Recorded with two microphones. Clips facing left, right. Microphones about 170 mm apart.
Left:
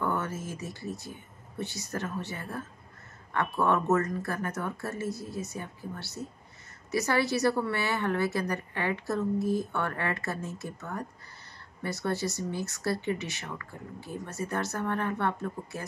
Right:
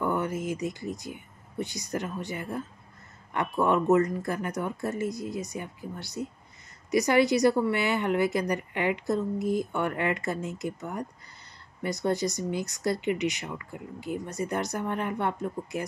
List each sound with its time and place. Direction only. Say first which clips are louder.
0.0 s a woman's voice: right 3 dB; 15° right (ahead or behind)